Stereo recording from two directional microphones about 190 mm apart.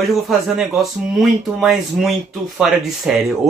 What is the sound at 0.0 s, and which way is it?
Speech, centre (ahead or behind).